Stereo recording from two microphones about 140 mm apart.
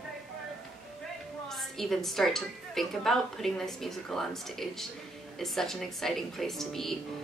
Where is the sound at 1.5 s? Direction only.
Centre (ahead or behind).